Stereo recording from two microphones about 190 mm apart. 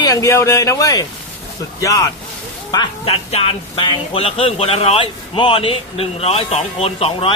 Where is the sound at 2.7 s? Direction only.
25° left (ahead or behind).